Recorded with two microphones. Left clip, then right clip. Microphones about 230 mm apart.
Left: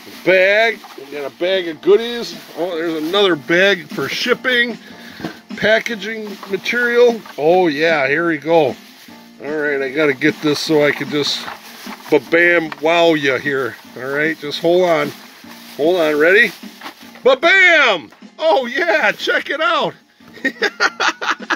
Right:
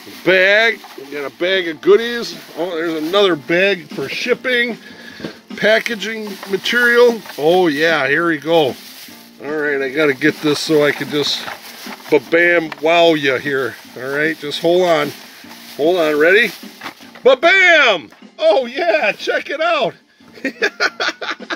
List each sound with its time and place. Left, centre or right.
0.2 s speech: centre
3.4 s speech: centre
4.4 s speech: centre